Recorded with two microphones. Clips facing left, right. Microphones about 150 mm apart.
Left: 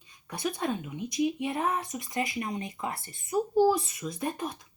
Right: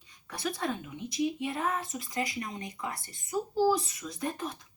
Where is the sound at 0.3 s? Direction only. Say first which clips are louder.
Left 2 dB; 20° left (ahead or behind).